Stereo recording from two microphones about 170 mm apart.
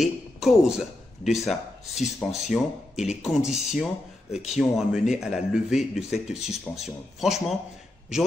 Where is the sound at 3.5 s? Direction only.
40° left (ahead or behind).